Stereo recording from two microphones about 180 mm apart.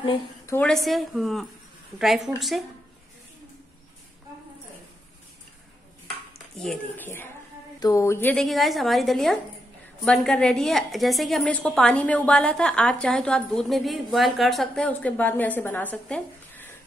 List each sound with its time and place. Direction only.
0.5 s a woman's voice: 5° left (ahead or behind)
6.0 s dishes: centre (ahead or behind)
7.1 s a woman's voice: 15° left (ahead or behind)